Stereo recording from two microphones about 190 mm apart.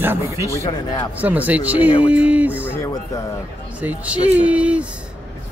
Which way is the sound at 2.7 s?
15° left (ahead or behind).